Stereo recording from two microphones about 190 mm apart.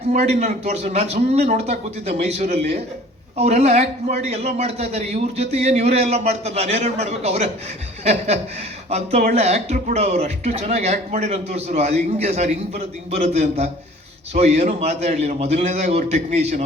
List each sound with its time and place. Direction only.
0.1 s a man's voice: 35° right (ahead or behind)